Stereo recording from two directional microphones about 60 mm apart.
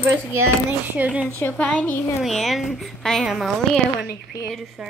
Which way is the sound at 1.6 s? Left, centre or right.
Centre.